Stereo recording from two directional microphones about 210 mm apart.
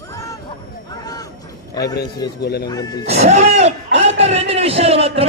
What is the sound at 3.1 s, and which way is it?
Speech, 30° right (ahead or behind).